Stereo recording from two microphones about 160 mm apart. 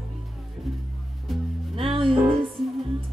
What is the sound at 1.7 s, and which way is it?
Music, 35° right (ahead or behind).